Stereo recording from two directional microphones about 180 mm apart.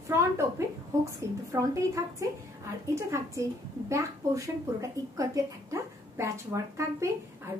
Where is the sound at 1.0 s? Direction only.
15° right (ahead or behind).